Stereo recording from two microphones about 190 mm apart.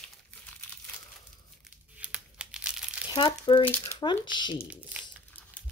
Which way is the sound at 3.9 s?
25° left (ahead or behind).